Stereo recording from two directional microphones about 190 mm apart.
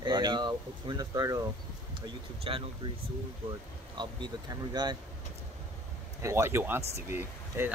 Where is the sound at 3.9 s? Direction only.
25° right (ahead or behind).